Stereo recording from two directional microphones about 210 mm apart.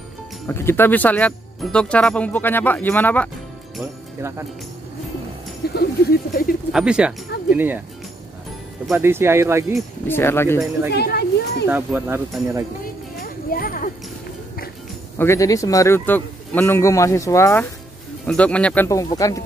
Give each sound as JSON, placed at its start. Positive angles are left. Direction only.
{"t": 0.5, "sound": "speech", "side_deg": 10}
{"t": 5.8, "sound": "speech", "side_deg": 45}
{"t": 6.7, "sound": "speech", "side_deg": -5}
{"t": 8.8, "sound": "speech", "side_deg": -5}
{"t": 9.8, "sound": "speech", "side_deg": 10}
{"t": 10.9, "sound": "a sound", "side_deg": 50}
{"t": 11.7, "sound": "speech", "side_deg": -10}
{"t": 13.2, "sound": "a sound", "side_deg": 45}
{"t": 15.1, "sound": "speech", "side_deg": 15}